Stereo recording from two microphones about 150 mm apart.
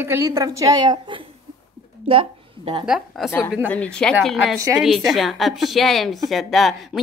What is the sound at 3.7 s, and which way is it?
Speech, 5° left (ahead or behind).